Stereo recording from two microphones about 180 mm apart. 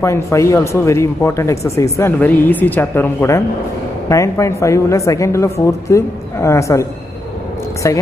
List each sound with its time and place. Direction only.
0.0 s speech: 15° left (ahead or behind)